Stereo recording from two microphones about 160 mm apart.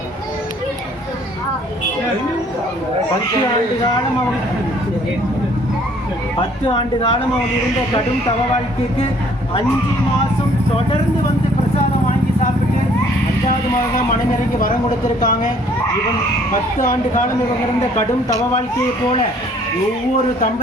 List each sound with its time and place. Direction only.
6.7 s speech: 35° left (ahead or behind)
14.6 s a woman's voice: 55° left (ahead or behind)
16.7 s speech: 55° left (ahead or behind)